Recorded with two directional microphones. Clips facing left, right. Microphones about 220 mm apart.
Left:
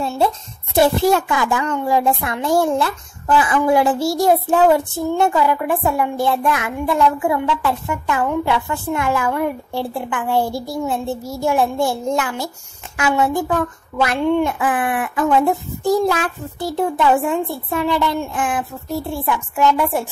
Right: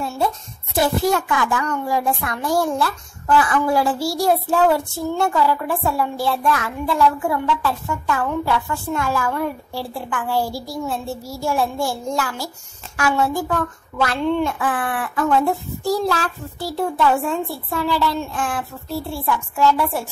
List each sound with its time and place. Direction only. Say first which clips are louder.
0.7 s a child's voice: left 4 dB; 25° left (ahead or behind)